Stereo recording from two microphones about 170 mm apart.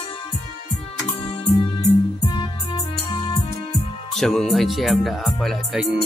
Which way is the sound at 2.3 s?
25° left (ahead or behind).